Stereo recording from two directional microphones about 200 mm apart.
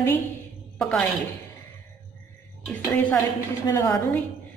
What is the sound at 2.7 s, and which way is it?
Speech, 10° left (ahead or behind).